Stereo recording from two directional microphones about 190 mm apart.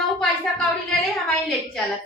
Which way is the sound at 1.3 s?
Centre (ahead or behind).